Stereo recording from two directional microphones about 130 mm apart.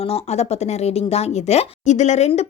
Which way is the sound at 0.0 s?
50° left (ahead or behind).